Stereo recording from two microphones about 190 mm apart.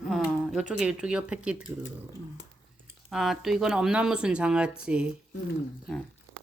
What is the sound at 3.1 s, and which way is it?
Speech, centre (ahead or behind).